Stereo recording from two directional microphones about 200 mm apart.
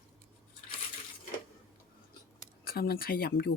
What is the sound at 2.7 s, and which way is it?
Speech, 50° left (ahead or behind).